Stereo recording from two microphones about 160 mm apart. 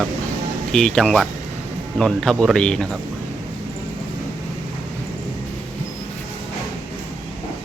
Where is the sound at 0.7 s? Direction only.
5° left (ahead or behind).